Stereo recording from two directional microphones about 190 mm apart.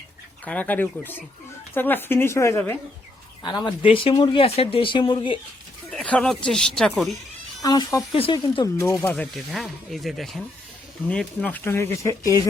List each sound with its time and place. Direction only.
0.4 s speech: 10° left (ahead or behind)
3.4 s speech: 25° left (ahead or behind)
5.9 s speech: 5° left (ahead or behind)
7.6 s speech: 20° left (ahead or behind)